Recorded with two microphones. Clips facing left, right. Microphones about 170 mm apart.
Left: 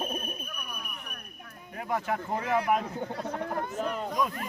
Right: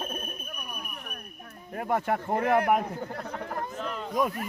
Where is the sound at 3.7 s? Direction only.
40° left (ahead or behind).